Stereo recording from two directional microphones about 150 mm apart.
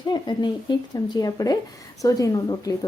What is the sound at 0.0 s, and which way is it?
Speech, 30° left (ahead or behind).